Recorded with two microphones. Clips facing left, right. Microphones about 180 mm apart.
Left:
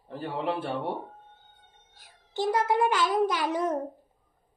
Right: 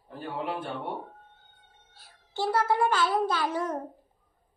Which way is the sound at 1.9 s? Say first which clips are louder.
Left 1 dB; 15° left (ahead or behind).